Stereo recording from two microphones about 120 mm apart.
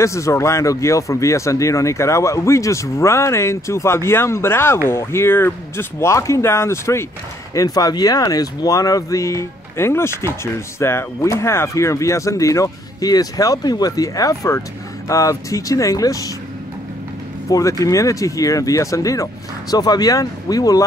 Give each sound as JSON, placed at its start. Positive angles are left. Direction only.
{"t": 0.0, "sound": "a man's voice", "side_deg": 25}
{"t": 17.5, "sound": "a man's voice", "side_deg": 30}